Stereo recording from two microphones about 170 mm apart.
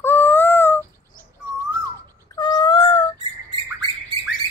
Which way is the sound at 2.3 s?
25° left (ahead or behind).